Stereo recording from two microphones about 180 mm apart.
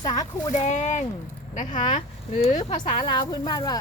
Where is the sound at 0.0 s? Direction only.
20° left (ahead or behind).